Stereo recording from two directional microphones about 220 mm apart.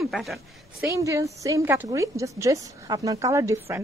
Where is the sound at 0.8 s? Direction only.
15° right (ahead or behind).